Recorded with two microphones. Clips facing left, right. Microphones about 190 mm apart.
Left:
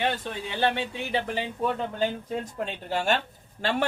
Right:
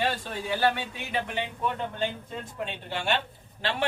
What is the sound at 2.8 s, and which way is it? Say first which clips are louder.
A man's voice: left 4 dB; 40° left (ahead or behind).